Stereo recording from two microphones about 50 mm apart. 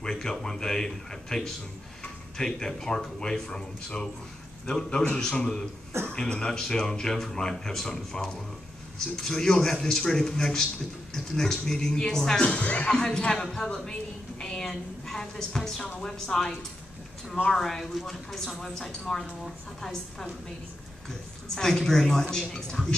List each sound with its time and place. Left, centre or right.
0.0 s speech: centre
12.4 s speech: left
21.5 s speech: centre